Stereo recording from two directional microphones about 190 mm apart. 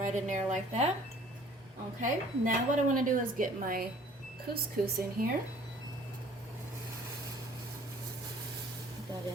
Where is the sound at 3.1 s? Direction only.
45° right (ahead or behind).